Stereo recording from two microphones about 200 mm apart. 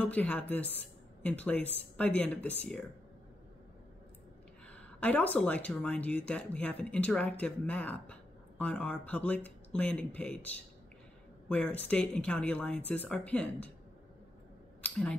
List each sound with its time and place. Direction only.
0.0 s speech: 5° left (ahead or behind)
4.7 s speech: 5° left (ahead or behind)